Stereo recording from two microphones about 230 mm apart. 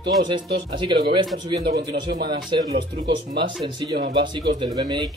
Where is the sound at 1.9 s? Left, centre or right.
Right.